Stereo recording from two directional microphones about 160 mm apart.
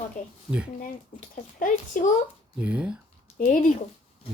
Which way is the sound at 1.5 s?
55° left (ahead or behind).